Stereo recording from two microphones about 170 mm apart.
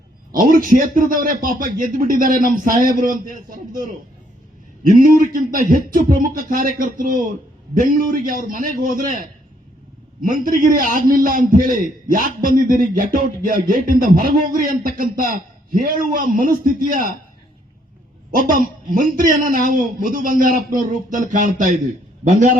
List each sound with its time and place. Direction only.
0.3 s a man's voice: 55° right (ahead or behind)
18.3 s speech: 55° right (ahead or behind)